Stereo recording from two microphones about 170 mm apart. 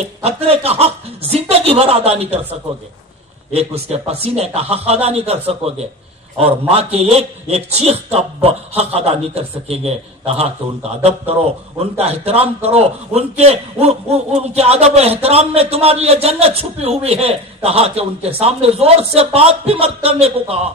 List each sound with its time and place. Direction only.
0.0 s a man's voice: 35° right (ahead or behind)
3.5 s a man's voice: 35° right (ahead or behind)